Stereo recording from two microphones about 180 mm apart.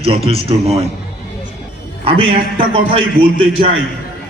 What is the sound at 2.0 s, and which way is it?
A man's voice, 30° right (ahead or behind).